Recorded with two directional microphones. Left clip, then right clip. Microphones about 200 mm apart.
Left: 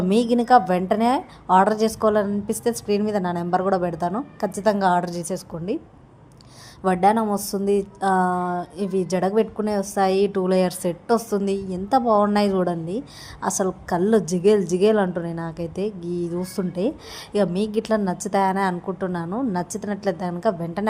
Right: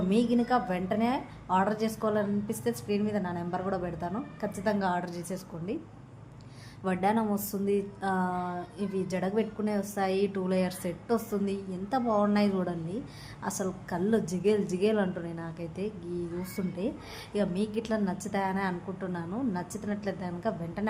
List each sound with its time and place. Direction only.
0.1 s a woman's voice: 40° left (ahead or behind)
6.8 s a woman's voice: 35° left (ahead or behind)